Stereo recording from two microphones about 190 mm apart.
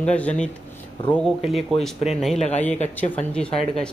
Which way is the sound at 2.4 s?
35° left (ahead or behind).